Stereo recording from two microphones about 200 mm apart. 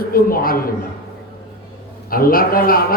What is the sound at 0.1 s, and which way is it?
Speech, 45° left (ahead or behind).